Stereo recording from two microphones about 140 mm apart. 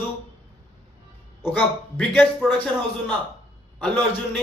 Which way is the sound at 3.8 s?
10° left (ahead or behind).